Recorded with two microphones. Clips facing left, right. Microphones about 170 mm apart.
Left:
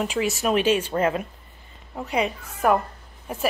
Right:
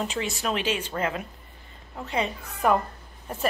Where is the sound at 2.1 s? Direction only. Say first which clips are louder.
Left 3 dB; 10° left (ahead or behind).